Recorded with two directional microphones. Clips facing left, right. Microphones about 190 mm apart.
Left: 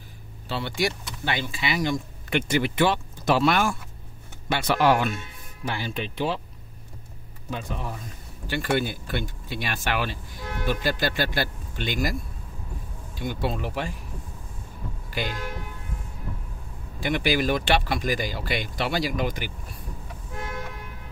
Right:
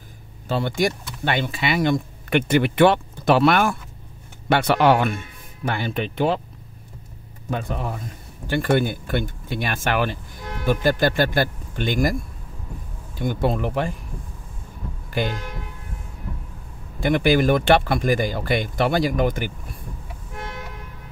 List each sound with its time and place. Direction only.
0.5 s speech: 50° right (ahead or behind)
7.4 s speech: 55° right (ahead or behind)
15.0 s speech: 50° right (ahead or behind)
17.0 s speech: 50° right (ahead or behind)